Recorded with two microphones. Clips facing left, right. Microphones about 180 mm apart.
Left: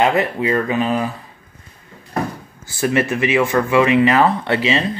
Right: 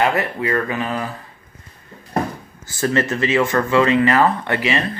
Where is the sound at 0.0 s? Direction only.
20° left (ahead or behind).